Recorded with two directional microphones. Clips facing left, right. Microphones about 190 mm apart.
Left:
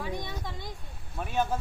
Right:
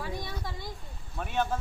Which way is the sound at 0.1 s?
15° left (ahead or behind).